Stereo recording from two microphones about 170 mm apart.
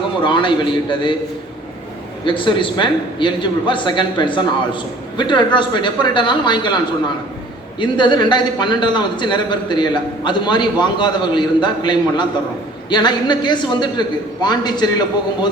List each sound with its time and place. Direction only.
0.2 s a man's voice: 30° left (ahead or behind)
2.2 s a man's voice: 30° left (ahead or behind)
7.8 s a man's voice: 25° left (ahead or behind)